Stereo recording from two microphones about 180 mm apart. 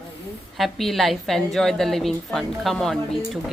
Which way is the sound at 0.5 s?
Centre (ahead or behind).